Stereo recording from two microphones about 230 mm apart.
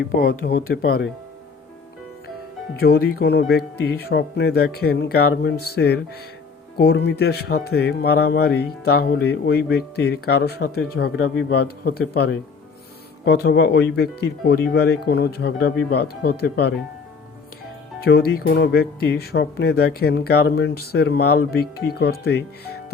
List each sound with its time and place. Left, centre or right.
0.0 s speech: left
2.7 s speech: left
18.0 s speech: left